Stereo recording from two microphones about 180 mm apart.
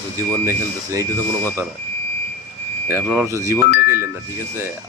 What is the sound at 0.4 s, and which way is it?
Speech, 15° right (ahead or behind).